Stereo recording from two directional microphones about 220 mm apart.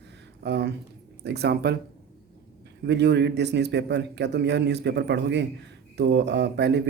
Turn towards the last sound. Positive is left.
turn(degrees=-50)  # may be behind; listen again after turning